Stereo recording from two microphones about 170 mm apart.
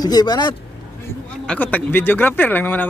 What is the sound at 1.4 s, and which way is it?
Speech, 10° left (ahead or behind).